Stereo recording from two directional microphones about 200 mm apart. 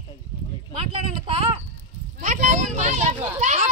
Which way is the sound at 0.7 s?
30° right (ahead or behind).